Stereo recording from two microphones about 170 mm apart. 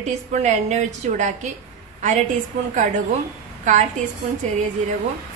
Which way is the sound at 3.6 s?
45° right (ahead or behind).